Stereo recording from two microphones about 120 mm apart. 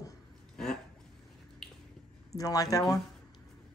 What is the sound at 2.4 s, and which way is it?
Speech, 30° left (ahead or behind).